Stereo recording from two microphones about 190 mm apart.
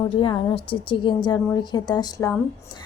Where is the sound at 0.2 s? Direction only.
25° left (ahead or behind).